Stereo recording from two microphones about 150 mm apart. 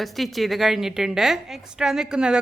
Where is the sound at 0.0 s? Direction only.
Centre (ahead or behind).